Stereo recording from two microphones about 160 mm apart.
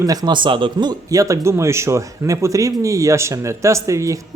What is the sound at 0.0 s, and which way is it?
A man's voice, 20° right (ahead or behind).